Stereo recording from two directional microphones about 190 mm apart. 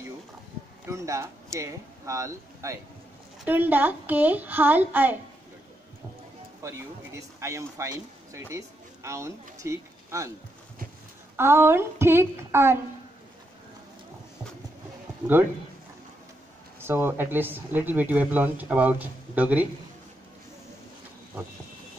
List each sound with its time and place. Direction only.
0.8 s speech: 15° right (ahead or behind)
6.6 s speech: 15° right (ahead or behind)
11.3 s speech: 10° right (ahead or behind)
16.8 s speech: 10° right (ahead or behind)